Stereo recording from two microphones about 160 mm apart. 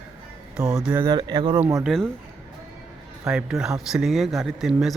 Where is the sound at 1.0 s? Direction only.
30° right (ahead or behind).